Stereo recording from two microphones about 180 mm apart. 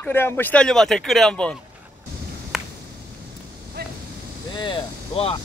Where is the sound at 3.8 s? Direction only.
60° right (ahead or behind).